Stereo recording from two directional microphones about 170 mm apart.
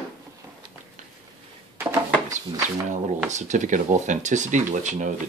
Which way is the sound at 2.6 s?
45° right (ahead or behind).